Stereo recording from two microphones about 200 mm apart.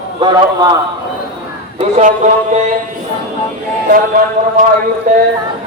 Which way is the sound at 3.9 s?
45° right (ahead or behind).